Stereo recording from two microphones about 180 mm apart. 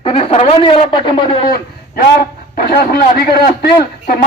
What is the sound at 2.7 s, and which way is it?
Speech, 60° left (ahead or behind).